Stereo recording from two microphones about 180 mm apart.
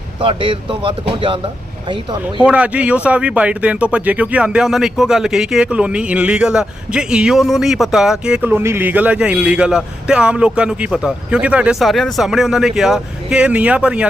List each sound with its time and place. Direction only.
0.2 s speech: 30° right (ahead or behind)
2.4 s speech: 5° right (ahead or behind)